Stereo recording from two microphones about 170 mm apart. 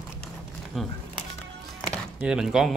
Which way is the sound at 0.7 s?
Centre (ahead or behind).